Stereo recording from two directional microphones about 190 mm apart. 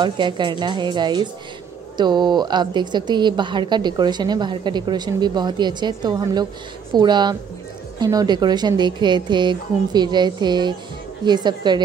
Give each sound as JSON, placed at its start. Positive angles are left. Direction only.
{"t": 0.0, "sound": "a woman's voice", "side_deg": -25}